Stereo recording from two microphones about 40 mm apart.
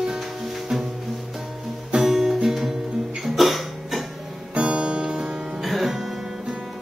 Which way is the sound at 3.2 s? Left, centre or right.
Centre.